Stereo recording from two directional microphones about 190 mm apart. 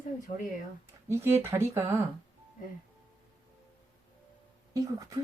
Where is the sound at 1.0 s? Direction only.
15° right (ahead or behind).